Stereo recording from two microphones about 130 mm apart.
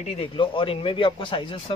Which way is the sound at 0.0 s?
50° left (ahead or behind).